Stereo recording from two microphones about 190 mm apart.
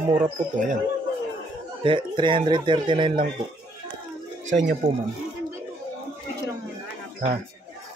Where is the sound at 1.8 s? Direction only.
25° right (ahead or behind).